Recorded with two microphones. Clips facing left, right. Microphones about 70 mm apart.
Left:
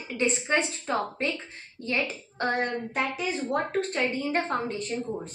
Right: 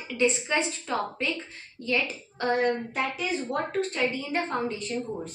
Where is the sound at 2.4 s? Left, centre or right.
Left.